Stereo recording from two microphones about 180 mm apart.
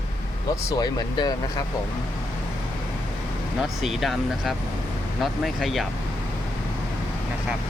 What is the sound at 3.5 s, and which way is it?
Speech, centre (ahead or behind).